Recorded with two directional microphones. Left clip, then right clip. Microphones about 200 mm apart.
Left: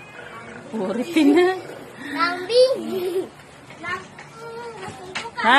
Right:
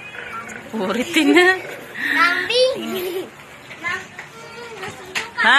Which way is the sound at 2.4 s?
45° left (ahead or behind).